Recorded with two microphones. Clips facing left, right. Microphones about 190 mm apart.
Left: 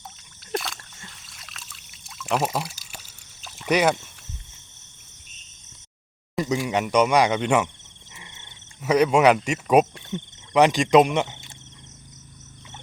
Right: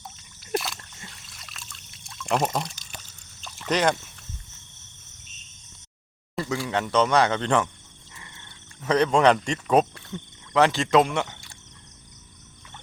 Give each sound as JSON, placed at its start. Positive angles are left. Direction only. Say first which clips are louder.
{"t": 0.5, "sound": "trickle", "louder": "right 1 dB", "side_deg": -5}
{"t": 6.3, "sound": "speech", "louder": "left 3 dB", "side_deg": 15}
{"t": 8.1, "sound": "frog", "louder": "left 1 dB", "side_deg": 20}
{"t": 8.8, "sound": "speech", "louder": "left 2 dB", "side_deg": 10}